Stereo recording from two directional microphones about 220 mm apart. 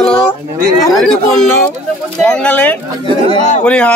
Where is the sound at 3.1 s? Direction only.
25° right (ahead or behind).